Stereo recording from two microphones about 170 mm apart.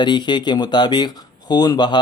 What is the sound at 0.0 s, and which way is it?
Speech, 25° left (ahead or behind).